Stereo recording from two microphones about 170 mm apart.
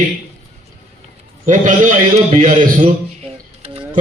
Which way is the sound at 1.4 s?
50° right (ahead or behind).